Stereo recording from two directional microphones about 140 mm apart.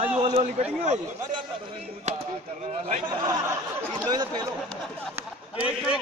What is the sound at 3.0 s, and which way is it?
Speech, 25° right (ahead or behind).